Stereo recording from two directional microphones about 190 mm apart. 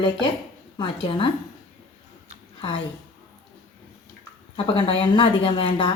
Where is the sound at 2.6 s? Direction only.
25° left (ahead or behind).